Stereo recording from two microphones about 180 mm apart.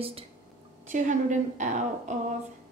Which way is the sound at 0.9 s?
45° right (ahead or behind).